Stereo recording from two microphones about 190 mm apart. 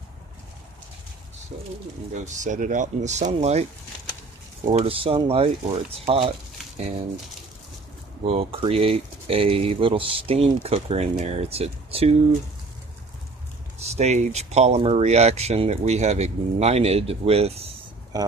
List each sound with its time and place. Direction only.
2.1 s speech: 40° right (ahead or behind)
4.6 s speech: 30° right (ahead or behind)
8.3 s speech: 30° right (ahead or behind)
13.8 s speech: 35° right (ahead or behind)